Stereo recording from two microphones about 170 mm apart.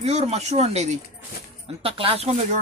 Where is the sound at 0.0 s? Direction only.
40° right (ahead or behind).